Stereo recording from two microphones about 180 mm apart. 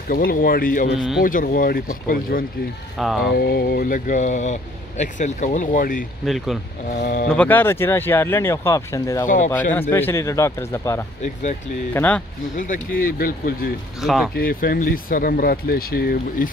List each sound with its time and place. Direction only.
0.1 s speech: 55° left (ahead or behind)
0.9 s speech: centre (ahead or behind)
1.2 s speech: 50° left (ahead or behind)
3.0 s speech: centre (ahead or behind)
3.3 s speech: 55° left (ahead or behind)
6.2 s speech: centre (ahead or behind)
6.9 s speech: 45° left (ahead or behind)
7.2 s speech: 10° left (ahead or behind)
9.2 s speech: 45° left (ahead or behind)
9.7 s speech: 10° left (ahead or behind)
12.5 s speech: 45° left (ahead or behind)
14.0 s speech: centre (ahead or behind)
14.3 s speech: 55° left (ahead or behind)